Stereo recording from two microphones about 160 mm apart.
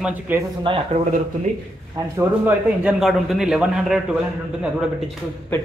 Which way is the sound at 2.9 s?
Centre (ahead or behind).